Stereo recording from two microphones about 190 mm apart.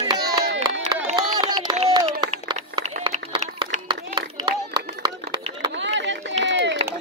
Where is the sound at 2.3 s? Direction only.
30° right (ahead or behind).